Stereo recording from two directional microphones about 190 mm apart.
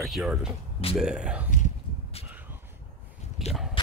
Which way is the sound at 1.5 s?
35° left (ahead or behind).